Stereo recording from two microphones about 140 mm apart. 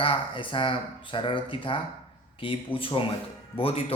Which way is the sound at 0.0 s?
40° left (ahead or behind).